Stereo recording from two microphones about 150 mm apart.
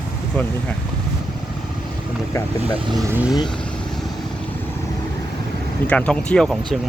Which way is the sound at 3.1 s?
5° right (ahead or behind).